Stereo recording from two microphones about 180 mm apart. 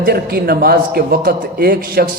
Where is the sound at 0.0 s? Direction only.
55° right (ahead or behind).